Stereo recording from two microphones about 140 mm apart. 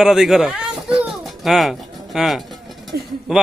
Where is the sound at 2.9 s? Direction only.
90° right.